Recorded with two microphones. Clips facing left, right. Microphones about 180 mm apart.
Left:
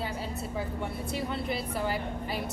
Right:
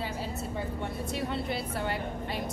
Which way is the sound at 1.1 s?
Centre (ahead or behind).